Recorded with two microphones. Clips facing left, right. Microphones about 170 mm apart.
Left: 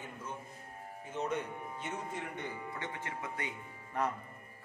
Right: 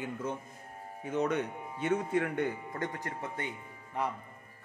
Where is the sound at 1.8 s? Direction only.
60° right (ahead or behind); by 3.3 s 40° right (ahead or behind).